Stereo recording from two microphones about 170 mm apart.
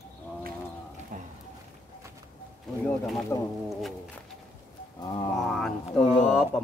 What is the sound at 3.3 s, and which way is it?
Speech, 15° left (ahead or behind).